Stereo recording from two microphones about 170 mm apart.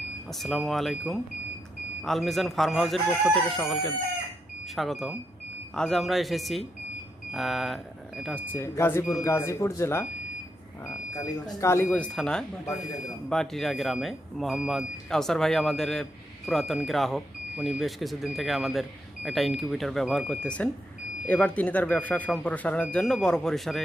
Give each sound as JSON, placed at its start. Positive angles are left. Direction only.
{"t": 0.3, "sound": "speech", "side_deg": 0}
{"t": 8.5, "sound": "speech", "side_deg": 15}
{"t": 11.6, "sound": "speech", "side_deg": 15}